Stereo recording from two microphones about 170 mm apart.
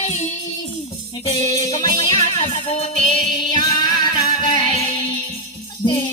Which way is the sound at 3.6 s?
25° left (ahead or behind).